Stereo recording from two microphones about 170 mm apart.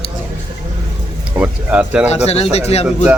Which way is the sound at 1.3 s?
10° right (ahead or behind).